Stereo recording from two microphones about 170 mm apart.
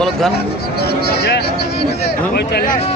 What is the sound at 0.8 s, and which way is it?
Speech, 70° left (ahead or behind).